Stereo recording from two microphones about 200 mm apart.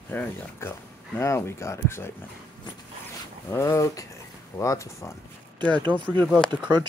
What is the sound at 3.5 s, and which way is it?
Speech, 15° left (ahead or behind).